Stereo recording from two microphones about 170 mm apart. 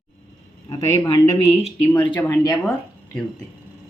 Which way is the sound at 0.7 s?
20° left (ahead or behind).